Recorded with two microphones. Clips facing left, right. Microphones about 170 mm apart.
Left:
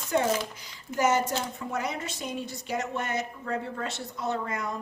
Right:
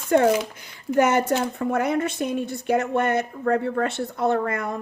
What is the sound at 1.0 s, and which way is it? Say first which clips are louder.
A woman's voice: right 6 dB; 60° right (ahead or behind).